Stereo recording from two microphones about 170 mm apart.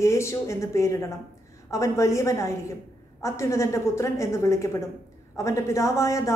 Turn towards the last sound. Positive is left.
turn(degrees=15)  # may be behind; listen again after turning